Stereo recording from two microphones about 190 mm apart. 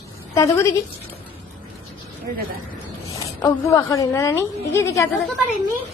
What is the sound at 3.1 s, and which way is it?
A woman's voice, 20° left (ahead or behind).